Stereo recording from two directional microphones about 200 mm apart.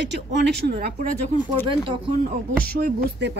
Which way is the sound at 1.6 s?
25° right (ahead or behind).